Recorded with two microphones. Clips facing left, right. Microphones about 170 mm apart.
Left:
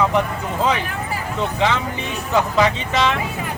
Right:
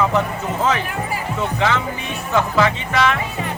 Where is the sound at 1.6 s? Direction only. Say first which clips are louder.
Left 1 dB; 20° left (ahead or behind).